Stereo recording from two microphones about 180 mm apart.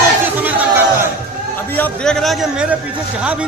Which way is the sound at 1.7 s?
5° left (ahead or behind).